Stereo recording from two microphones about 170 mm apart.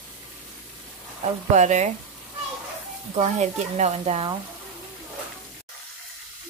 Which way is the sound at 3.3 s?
45° right (ahead or behind).